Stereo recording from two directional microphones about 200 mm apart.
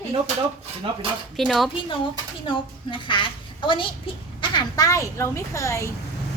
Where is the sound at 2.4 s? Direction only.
25° left (ahead or behind).